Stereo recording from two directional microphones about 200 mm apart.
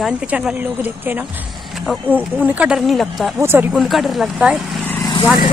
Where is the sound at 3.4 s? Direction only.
10° right (ahead or behind).